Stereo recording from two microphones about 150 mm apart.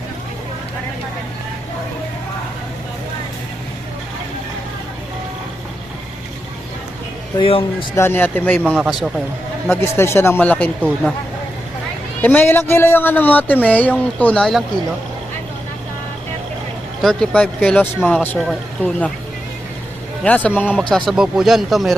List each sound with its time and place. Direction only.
7.3 s a man's voice: 35° left (ahead or behind)
7.9 s speech: 15° left (ahead or behind)
8.7 s speech: centre (ahead or behind)
9.6 s speech: 15° left (ahead or behind)
12.2 s speech: 10° left (ahead or behind)
17.0 s speech: 5° left (ahead or behind)
20.2 s speech: 10° left (ahead or behind)
21.1 s speech: centre (ahead or behind)